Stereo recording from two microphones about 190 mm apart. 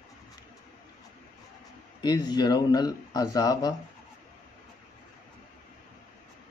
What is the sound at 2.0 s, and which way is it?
Speech, 20° left (ahead or behind).